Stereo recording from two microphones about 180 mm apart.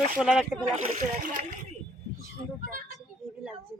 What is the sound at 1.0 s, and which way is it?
Speech, 50° right (ahead or behind).